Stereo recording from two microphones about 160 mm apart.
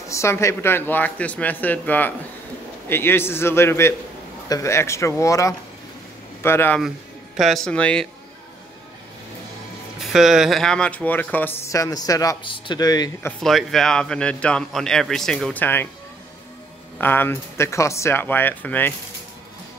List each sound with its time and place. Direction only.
0.1 s speech: 15° left (ahead or behind)
7.3 s a man's voice: centre (ahead or behind)
10.1 s speech: 5° right (ahead or behind); by 13.3 s 25° left (ahead or behind)
13.4 s a man's voice: centre (ahead or behind)
17.0 s speech: 15° left (ahead or behind)